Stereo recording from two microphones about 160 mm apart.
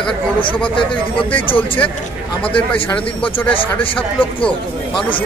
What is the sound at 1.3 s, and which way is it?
Speech, 35° left (ahead or behind).